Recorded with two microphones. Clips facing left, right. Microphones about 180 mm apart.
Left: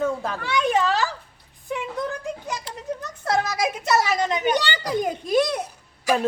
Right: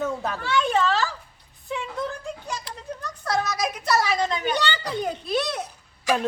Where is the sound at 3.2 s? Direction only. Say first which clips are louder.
Left 2 dB; 30° left (ahead or behind).